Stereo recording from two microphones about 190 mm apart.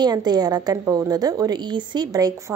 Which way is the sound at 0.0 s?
20° right (ahead or behind).